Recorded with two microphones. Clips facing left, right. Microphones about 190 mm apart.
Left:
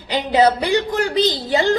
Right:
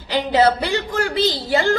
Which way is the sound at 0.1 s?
15° left (ahead or behind).